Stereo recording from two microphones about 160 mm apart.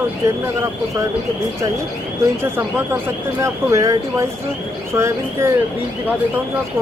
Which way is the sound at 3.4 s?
20° right (ahead or behind).